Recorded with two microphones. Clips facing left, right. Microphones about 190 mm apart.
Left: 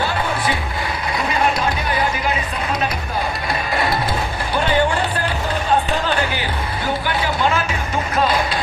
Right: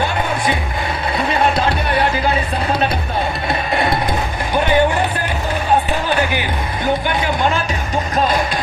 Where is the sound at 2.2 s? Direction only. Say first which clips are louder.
Right 4 dB; 35° right (ahead or behind).